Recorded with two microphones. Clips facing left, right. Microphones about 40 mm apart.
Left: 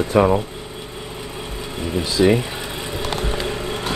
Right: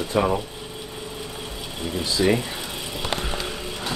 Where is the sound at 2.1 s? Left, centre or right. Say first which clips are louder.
Left 5 dB; left.